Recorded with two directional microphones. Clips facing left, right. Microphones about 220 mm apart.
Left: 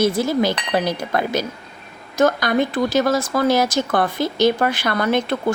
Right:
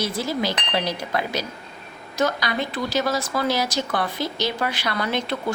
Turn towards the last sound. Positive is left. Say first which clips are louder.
# left 6 dB
turn(degrees=50)  # may be behind; listen again after turning